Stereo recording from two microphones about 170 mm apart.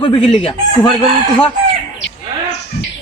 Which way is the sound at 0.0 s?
30° left (ahead or behind).